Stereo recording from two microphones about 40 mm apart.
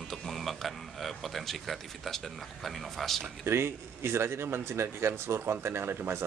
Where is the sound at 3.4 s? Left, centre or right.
Right.